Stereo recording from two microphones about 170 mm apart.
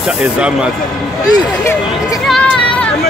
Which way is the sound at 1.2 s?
20° left (ahead or behind).